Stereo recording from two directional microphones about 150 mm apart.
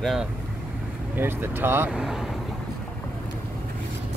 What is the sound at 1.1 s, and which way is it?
Speech, 15° right (ahead or behind).